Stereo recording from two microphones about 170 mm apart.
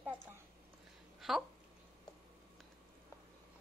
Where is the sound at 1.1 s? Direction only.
Centre (ahead or behind).